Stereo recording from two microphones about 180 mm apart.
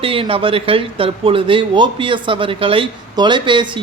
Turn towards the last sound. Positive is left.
turn(degrees=-25)  # may be behind; listen again after turning